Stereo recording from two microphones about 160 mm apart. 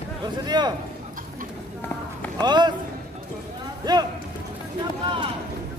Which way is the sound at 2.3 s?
25° right (ahead or behind).